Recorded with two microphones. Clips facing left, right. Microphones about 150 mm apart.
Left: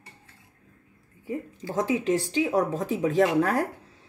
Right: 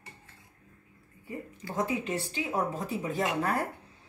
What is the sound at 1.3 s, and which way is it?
Speech, 90° left.